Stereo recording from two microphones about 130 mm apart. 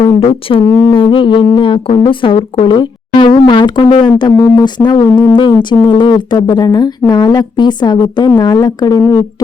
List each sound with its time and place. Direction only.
0.0 s speech: 50° left (ahead or behind)
0.6 s speech: 25° left (ahead or behind)
0.9 s speech: 40° left (ahead or behind)